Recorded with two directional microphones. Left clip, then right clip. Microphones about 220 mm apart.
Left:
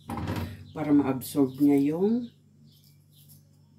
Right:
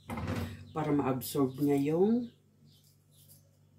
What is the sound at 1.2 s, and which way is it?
Speech, 20° right (ahead or behind).